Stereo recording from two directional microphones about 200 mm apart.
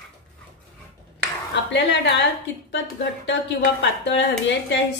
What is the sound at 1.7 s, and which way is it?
A woman's voice, 60° left (ahead or behind).